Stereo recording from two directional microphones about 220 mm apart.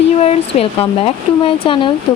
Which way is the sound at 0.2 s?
25° left (ahead or behind).